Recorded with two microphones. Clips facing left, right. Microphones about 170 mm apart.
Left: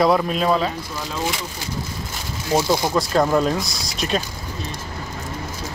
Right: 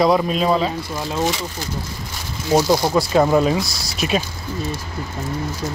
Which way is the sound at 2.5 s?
15° right (ahead or behind).